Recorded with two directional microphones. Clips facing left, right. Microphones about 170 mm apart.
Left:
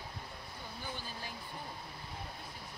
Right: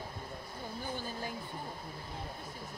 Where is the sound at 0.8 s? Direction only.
45° right (ahead or behind).